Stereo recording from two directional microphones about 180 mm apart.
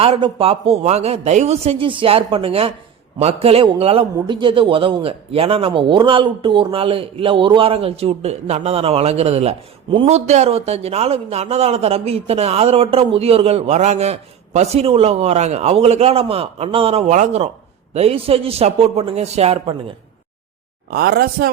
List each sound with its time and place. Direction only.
0.0 s a man's voice: 30° right (ahead or behind)
20.9 s speech: 60° right (ahead or behind)